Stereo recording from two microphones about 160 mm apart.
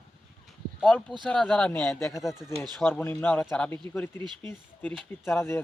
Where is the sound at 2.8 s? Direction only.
15° left (ahead or behind).